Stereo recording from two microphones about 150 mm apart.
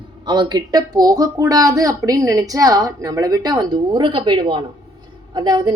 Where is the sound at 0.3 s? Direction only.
30° right (ahead or behind).